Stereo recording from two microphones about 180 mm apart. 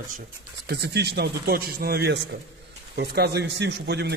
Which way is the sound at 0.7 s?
65° right (ahead or behind).